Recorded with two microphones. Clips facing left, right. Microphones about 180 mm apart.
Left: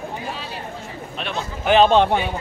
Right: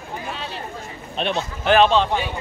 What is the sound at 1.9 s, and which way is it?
Speech, 55° left (ahead or behind).